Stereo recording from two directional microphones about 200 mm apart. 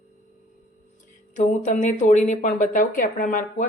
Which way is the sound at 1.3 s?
40° left (ahead or behind).